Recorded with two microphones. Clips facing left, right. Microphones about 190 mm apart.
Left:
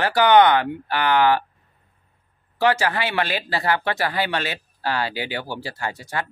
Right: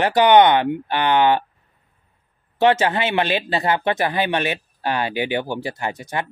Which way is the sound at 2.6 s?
20° right (ahead or behind).